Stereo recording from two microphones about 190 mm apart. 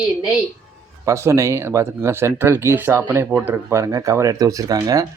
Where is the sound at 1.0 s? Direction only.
15° right (ahead or behind).